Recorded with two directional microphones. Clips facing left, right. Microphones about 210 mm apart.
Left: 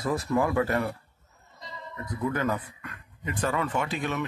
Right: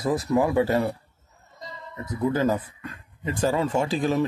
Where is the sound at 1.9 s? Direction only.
25° right (ahead or behind).